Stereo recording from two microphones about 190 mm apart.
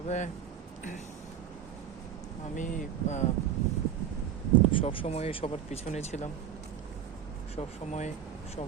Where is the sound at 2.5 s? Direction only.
40° left (ahead or behind).